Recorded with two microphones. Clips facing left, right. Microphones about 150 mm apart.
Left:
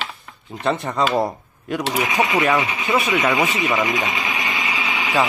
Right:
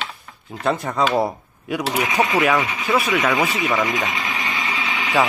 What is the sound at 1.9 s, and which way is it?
Speech, 15° left (ahead or behind).